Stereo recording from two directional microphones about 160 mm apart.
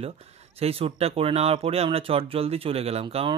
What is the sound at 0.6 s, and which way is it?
Speech, 40° right (ahead or behind).